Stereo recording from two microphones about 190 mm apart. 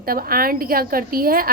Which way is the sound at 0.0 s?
50° right (ahead or behind).